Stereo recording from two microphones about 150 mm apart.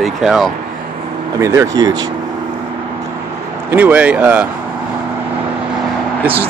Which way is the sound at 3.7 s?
10° right (ahead or behind).